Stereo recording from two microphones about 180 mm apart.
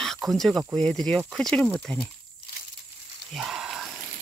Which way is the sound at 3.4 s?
Centre (ahead or behind).